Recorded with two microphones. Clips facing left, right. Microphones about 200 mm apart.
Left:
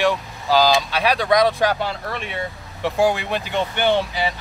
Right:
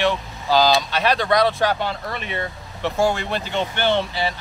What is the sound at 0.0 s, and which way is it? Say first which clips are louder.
Speech: left 1 dB; 10° left (ahead or behind).